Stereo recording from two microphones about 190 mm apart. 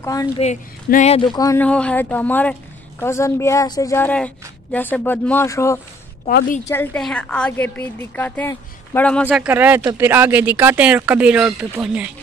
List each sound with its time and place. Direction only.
0.0 s a woman's voice: 20° left (ahead or behind)
0.8 s a woman's voice: 40° left (ahead or behind); by 9.3 s 10° left (ahead or behind)
9.3 s speech: 10° right (ahead or behind)